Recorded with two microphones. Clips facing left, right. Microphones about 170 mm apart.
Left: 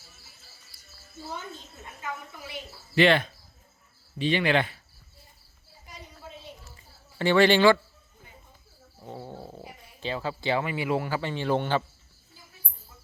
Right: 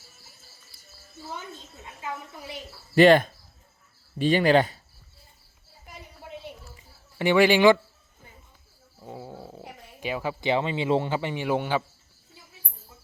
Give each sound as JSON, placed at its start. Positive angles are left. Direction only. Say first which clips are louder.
{"t": 2.5, "sound": "speech", "louder": "right 1 dB", "side_deg": -45}
{"t": 5.9, "sound": "a sound", "louder": "right 3 dB", "side_deg": -60}
{"t": 7.2, "sound": "speech", "louder": "right 1 dB", "side_deg": -15}
{"t": 9.0, "sound": "snoring", "louder": "even", "side_deg": -5}
{"t": 10.0, "sound": "speech", "louder": "right 2 dB", "side_deg": -15}